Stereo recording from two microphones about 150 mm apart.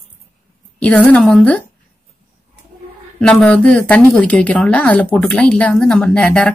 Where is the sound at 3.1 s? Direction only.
5° left (ahead or behind).